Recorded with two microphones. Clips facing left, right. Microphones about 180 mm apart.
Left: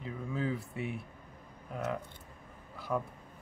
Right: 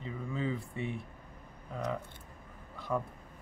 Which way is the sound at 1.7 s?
5° left (ahead or behind).